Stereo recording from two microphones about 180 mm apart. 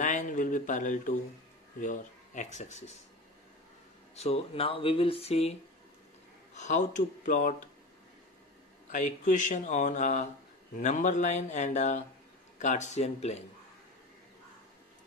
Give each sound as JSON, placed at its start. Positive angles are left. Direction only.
{"t": 0.0, "sound": "a sound", "side_deg": 45}
{"t": 1.8, "sound": "speech", "side_deg": 45}
{"t": 4.1, "sound": "speech", "side_deg": 35}
{"t": 8.9, "sound": "speech", "side_deg": 45}